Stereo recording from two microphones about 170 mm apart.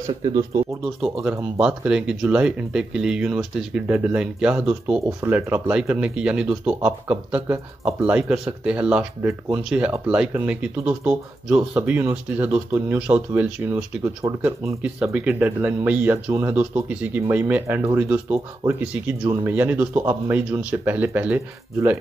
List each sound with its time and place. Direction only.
1.2 s speech: 5° right (ahead or behind)